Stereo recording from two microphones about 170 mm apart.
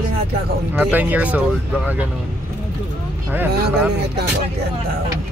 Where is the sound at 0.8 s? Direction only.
10° right (ahead or behind).